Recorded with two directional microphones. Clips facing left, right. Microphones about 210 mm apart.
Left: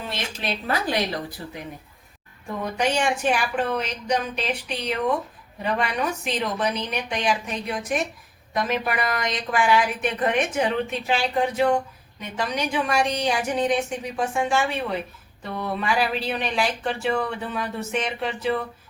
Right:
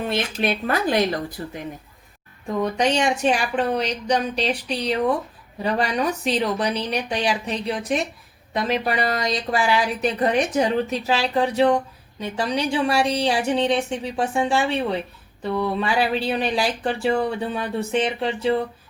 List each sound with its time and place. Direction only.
0.1 s speech: 55° right (ahead or behind)
2.7 s speech: 35° right (ahead or behind)